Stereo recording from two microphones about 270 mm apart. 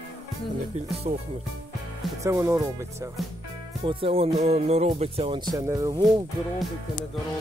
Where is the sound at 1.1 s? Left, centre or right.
Right.